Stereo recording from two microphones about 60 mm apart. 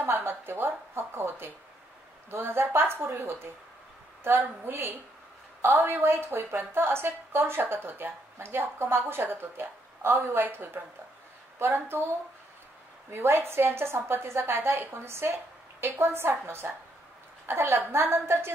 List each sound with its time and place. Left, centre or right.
0.0 s a woman's voice: right
13.1 s a woman's voice: right